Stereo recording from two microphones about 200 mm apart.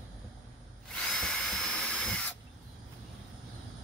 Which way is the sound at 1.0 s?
Centre (ahead or behind).